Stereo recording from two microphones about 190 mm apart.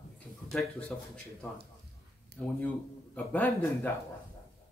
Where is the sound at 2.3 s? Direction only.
55° right (ahead or behind).